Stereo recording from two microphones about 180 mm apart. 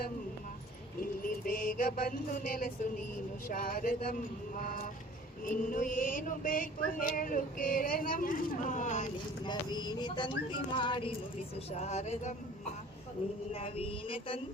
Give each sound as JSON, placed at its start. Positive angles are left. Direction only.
{"t": 1.2, "sound": "mantra", "side_deg": 50}
{"t": 9.4, "sound": "a sound", "side_deg": 25}
{"t": 11.8, "sound": "speech", "side_deg": 40}
{"t": 13.5, "sound": "speech", "side_deg": 30}